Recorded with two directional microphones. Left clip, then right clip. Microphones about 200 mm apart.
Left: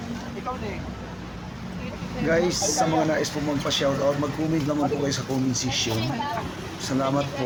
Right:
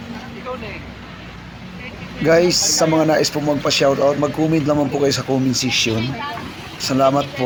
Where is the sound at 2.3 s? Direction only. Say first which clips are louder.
Right 9 dB; 30° right (ahead or behind).